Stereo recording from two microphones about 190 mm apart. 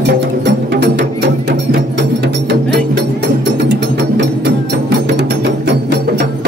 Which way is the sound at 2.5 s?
60° right (ahead or behind).